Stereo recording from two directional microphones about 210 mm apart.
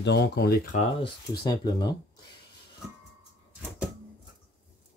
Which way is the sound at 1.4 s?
20° left (ahead or behind).